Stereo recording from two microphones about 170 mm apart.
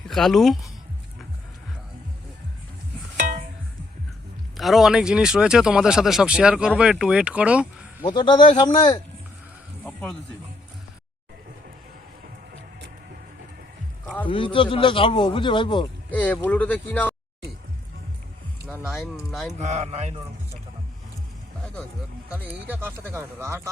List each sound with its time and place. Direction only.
0.1 s speech: centre (ahead or behind)
4.5 s speech: centre (ahead or behind)
8.0 s a man's voice: 25° left (ahead or behind)
9.8 s a sound: 5° left (ahead or behind)
14.3 s a man's voice: 30° left (ahead or behind)
16.1 s speech: 10° left (ahead or behind)
18.9 s speech: centre (ahead or behind)
19.5 s speech: 40° right (ahead or behind)
22.6 s speech: 10° right (ahead or behind)